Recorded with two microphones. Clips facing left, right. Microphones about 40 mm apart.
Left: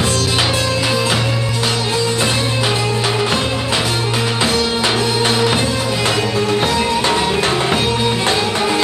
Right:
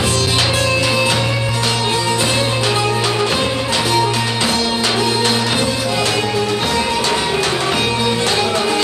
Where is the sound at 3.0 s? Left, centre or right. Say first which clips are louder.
Even; centre.